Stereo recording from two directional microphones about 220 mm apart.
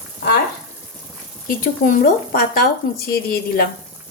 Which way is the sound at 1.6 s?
40° left (ahead or behind).